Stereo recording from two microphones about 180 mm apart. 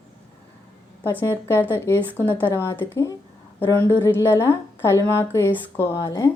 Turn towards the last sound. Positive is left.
turn(degrees=15)  # may be behind; listen again after turning